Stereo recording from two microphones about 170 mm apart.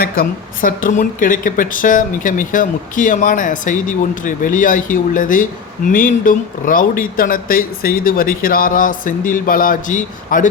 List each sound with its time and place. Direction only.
0.0 s a woman's voice: 55° left (ahead or behind)